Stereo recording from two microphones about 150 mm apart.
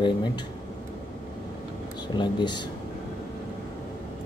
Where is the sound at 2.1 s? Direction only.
30° left (ahead or behind).